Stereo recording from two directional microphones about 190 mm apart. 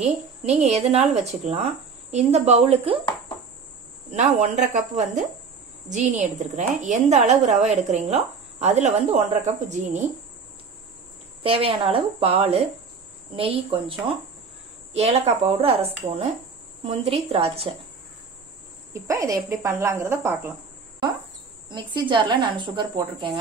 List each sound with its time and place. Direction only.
0.0 s a woman's voice: 35° right (ahead or behind)
4.1 s a woman's voice: 40° right (ahead or behind)
11.4 s a woman's voice: 30° right (ahead or behind)
19.0 s speech: 15° right (ahead or behind)
21.6 s a woman's voice: 25° right (ahead or behind)